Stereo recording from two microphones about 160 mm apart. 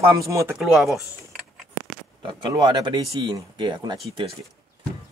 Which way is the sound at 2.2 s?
30° right (ahead or behind).